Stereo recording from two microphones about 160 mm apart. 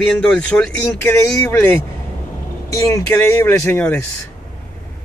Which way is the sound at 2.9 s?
15° left (ahead or behind).